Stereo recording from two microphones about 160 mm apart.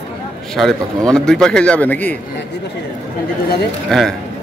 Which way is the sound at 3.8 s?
Centre (ahead or behind).